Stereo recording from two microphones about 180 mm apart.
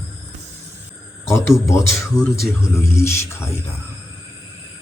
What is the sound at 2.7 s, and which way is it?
Speech, 15° left (ahead or behind).